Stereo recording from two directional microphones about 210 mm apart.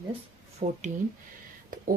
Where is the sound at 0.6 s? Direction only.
35° right (ahead or behind).